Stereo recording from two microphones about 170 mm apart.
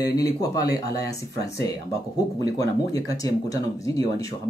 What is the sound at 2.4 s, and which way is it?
Speech, 20° left (ahead or behind).